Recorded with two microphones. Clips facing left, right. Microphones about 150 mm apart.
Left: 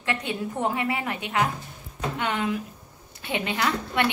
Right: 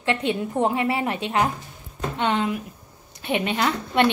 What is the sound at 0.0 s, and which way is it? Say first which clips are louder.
A woman's voice: right 5 dB; 25° right (ahead or behind).